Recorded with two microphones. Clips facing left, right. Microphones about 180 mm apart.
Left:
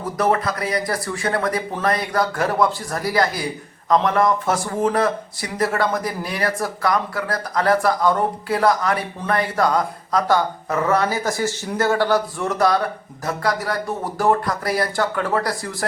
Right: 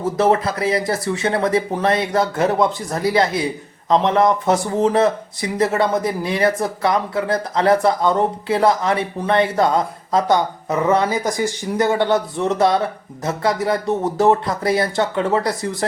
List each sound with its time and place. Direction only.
0.0 s a man's voice: 25° right (ahead or behind)